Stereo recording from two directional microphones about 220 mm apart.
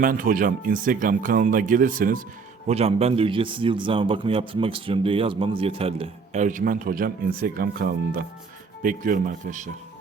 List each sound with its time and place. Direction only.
0.0 s a man's voice: 40° right (ahead or behind)